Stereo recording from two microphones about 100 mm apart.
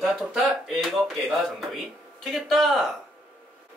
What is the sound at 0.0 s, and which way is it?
Speech, centre (ahead or behind).